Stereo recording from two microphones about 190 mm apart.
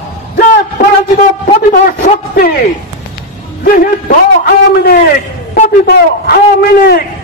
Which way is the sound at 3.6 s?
45° left (ahead or behind).